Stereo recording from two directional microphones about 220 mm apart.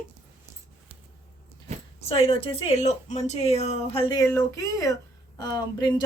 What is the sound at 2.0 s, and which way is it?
Speech, 25° left (ahead or behind).